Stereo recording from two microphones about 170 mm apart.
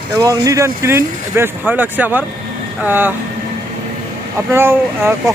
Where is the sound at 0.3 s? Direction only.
20° right (ahead or behind).